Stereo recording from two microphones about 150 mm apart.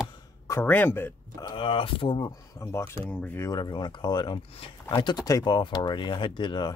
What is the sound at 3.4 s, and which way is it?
Speech, 30° left (ahead or behind).